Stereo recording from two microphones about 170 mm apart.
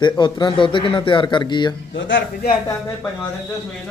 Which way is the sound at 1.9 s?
90° left.